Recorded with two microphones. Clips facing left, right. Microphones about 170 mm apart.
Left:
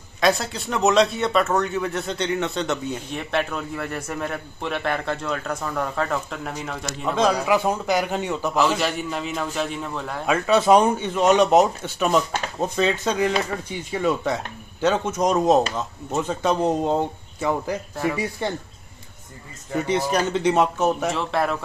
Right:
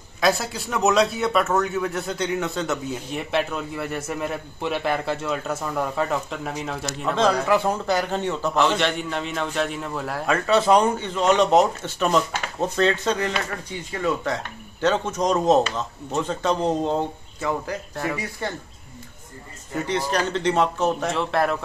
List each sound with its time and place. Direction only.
0.2 s a man's voice: centre (ahead or behind)
7.2 s a man's voice: 10° left (ahead or behind)
10.2 s speech: 15° left (ahead or behind)
15.0 s a man's voice: centre (ahead or behind)
18.4 s speech: 20° left (ahead or behind)
19.9 s speech: 10° left (ahead or behind)
21.1 s a man's voice: centre (ahead or behind)